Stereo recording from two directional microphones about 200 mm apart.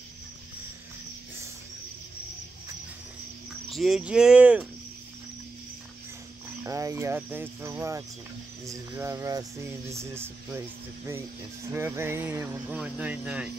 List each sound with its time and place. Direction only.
3.6 s speech: centre (ahead or behind)
6.6 s speech: 15° right (ahead or behind)
11.6 s speech: 15° right (ahead or behind)